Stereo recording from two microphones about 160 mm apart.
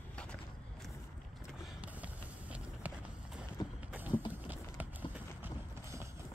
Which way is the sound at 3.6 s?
25° left (ahead or behind).